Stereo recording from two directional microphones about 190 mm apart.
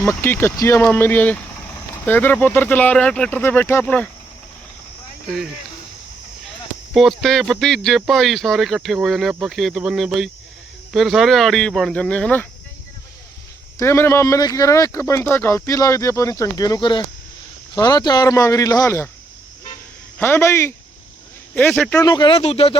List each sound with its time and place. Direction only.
0.0 s speech: 10° left (ahead or behind)
6.9 s speech: centre (ahead or behind)
13.7 s speech: 15° left (ahead or behind)
20.1 s speech: 10° left (ahead or behind); by 22.8 s 30° left (ahead or behind)